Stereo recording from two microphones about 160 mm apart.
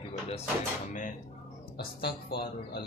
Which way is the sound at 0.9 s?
55° left (ahead or behind).